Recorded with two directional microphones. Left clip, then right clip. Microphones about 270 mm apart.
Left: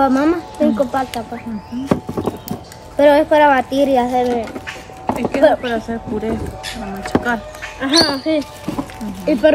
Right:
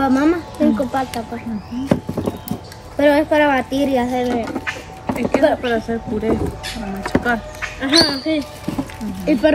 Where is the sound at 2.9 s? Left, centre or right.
Centre.